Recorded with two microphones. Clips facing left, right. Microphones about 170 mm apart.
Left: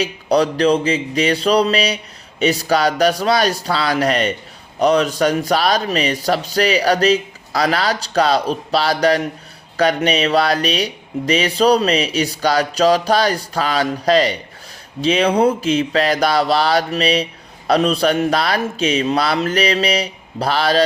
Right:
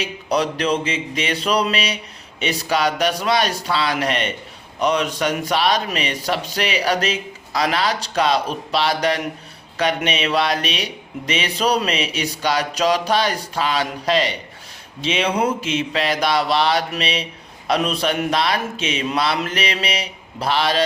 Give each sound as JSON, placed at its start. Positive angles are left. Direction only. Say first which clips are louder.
{"t": 0.0, "sound": "speech", "louder": "left 5 dB", "side_deg": 35}